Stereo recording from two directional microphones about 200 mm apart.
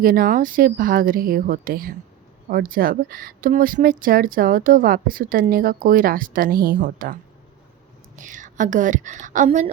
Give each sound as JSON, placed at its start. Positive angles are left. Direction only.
{"t": 0.0, "sound": "a woman's voice", "side_deg": -45}